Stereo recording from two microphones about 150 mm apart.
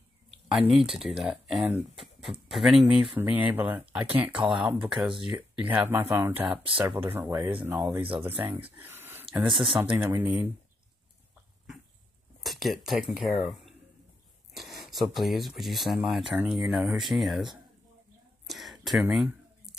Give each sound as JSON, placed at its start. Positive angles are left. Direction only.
{"t": 0.5, "sound": "speech", "side_deg": -5}
{"t": 6.6, "sound": "speech", "side_deg": -35}
{"t": 7.0, "sound": "speech", "side_deg": -15}
{"t": 12.4, "sound": "speech", "side_deg": 0}
{"t": 18.5, "sound": "a sound", "side_deg": 0}